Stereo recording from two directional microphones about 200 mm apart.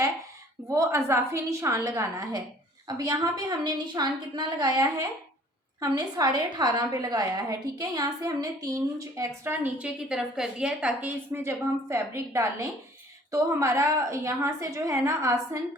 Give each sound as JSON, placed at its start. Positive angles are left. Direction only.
{"t": 0.7, "sound": "a woman's voice", "side_deg": -15}